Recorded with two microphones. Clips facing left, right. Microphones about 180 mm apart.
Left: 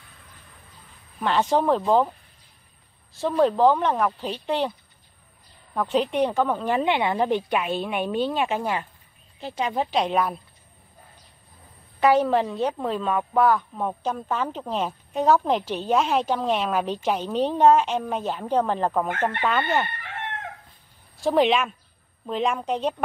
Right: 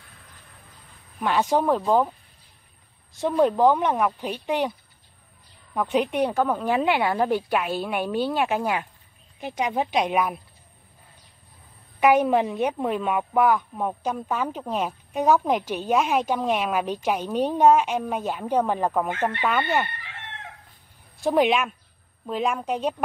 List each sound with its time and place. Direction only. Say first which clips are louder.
1.2 s speech: even; 10° right (ahead or behind)
3.2 s speech: even; 15° right (ahead or behind)
5.8 s speech: even; 10° right (ahead or behind)
12.0 s speech: right 1 dB; 15° right (ahead or behind)
20.0 s chicken: left 8 dB; 50° left (ahead or behind)
21.2 s speech: even; 10° right (ahead or behind)